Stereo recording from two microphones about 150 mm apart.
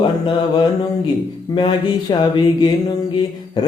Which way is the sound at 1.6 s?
30° left (ahead or behind).